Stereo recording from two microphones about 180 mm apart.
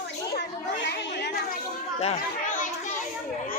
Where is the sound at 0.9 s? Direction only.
70° left (ahead or behind).